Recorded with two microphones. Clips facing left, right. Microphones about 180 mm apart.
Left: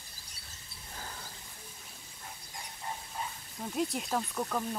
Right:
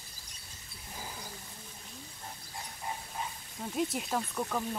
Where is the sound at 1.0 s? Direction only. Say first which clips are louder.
Right 1 dB; 10° right (ahead or behind).